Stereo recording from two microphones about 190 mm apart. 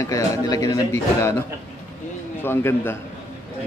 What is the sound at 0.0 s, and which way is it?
Speech, 20° left (ahead or behind).